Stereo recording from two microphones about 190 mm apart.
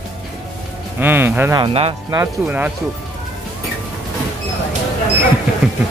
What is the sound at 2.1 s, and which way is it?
Speech, 10° right (ahead or behind).